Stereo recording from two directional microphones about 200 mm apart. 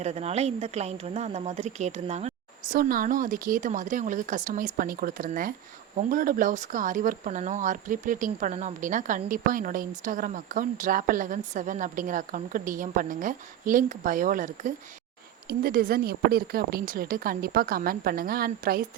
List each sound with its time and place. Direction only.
0.0 s speech: 35° right (ahead or behind)